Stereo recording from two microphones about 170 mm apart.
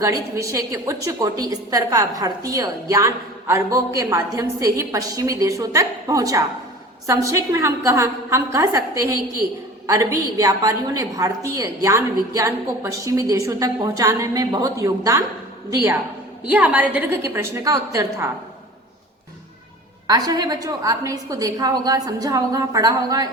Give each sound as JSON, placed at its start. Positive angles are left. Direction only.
{"t": 0.0, "sound": "a woman's voice", "side_deg": -20}
{"t": 16.5, "sound": "a woman's voice", "side_deg": -10}
{"t": 20.1, "sound": "a woman's voice", "side_deg": -20}